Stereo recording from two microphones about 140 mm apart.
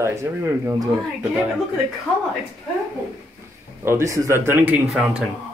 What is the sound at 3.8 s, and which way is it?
Speech, 20° right (ahead or behind).